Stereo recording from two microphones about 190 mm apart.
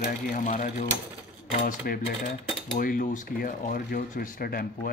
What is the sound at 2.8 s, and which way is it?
Speech, 45° left (ahead or behind).